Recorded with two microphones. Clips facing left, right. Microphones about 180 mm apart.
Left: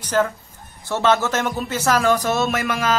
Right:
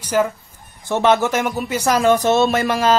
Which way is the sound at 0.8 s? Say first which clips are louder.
Right 3 dB; 20° right (ahead or behind).